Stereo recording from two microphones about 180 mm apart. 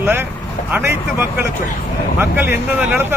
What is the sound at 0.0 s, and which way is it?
Speech, 10° right (ahead or behind).